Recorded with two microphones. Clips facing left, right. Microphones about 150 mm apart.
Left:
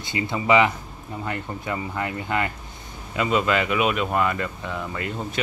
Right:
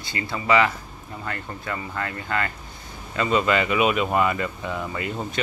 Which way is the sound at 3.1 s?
5° left (ahead or behind).